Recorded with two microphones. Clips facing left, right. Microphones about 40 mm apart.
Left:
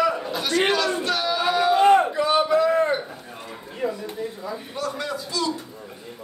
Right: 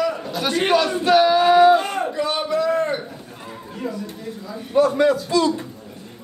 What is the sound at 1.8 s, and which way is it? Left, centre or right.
Battle cry, left.